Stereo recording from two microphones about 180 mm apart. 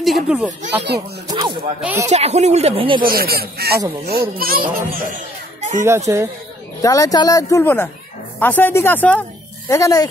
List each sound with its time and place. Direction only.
0.0 s speech: centre (ahead or behind)
1.2 s a sound: 25° right (ahead or behind)
1.8 s speech: 10° right (ahead or behind)
2.0 s speech: 35° right (ahead or behind)
3.0 s a child's voice: 55° right (ahead or behind)
5.8 s speech: 15° right (ahead or behind)
6.8 s speech: 20° left (ahead or behind)